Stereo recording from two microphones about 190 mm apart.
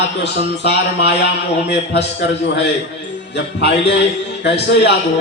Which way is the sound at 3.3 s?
65° left (ahead or behind).